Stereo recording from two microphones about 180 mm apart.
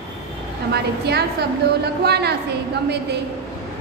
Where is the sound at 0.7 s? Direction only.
65° right (ahead or behind).